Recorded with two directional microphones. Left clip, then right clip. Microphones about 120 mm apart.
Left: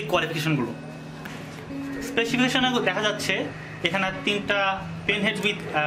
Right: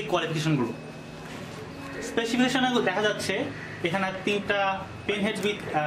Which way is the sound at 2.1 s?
10° left (ahead or behind).